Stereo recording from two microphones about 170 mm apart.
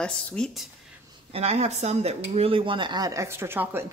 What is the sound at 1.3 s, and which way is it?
Speech, 35° right (ahead or behind).